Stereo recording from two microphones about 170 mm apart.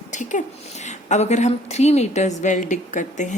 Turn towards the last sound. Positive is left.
turn(degrees=45)  # may be behind; listen again after turning